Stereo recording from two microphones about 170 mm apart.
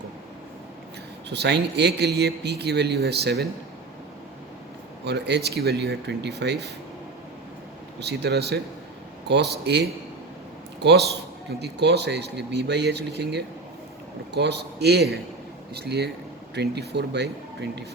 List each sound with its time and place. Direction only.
1.3 s a man's voice: 85° right
5.0 s a man's voice: 80° right
7.9 s a man's voice: 80° right
10.8 s a man's voice: 85° right